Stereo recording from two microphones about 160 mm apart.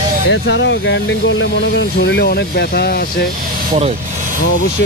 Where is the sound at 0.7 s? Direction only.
90° left.